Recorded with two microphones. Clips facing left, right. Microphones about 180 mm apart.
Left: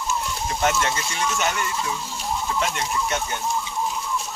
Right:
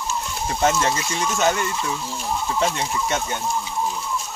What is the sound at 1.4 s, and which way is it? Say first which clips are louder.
Speech: right 4 dB; 30° right (ahead or behind).